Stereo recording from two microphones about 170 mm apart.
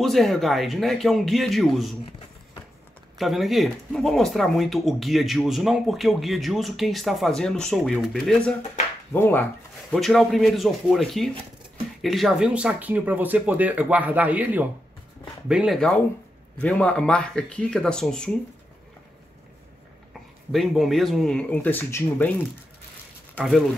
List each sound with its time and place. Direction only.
0.0 s speech: centre (ahead or behind)
3.2 s speech: centre (ahead or behind)
9.8 s speech: centre (ahead or behind)
20.5 s speech: centre (ahead or behind)
23.3 s speech: centre (ahead or behind)